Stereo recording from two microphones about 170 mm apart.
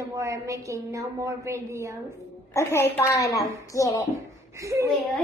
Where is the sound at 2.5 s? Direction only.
15° left (ahead or behind).